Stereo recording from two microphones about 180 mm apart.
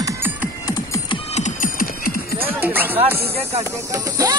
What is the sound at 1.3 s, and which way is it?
Music, 45° left (ahead or behind).